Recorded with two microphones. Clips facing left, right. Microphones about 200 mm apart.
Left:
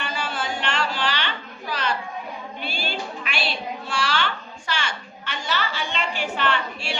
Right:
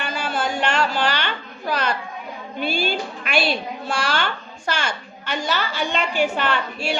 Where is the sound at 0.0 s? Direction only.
45° right (ahead or behind).